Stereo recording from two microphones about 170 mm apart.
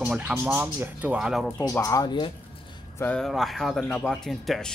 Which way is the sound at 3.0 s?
5° left (ahead or behind).